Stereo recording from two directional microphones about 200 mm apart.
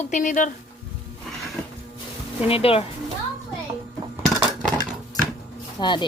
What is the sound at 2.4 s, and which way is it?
Speech, 30° left (ahead or behind).